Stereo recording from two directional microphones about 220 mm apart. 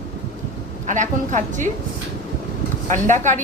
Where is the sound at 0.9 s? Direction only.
35° right (ahead or behind).